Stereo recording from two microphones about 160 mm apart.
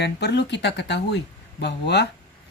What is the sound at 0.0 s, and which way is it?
Speech, 90° left.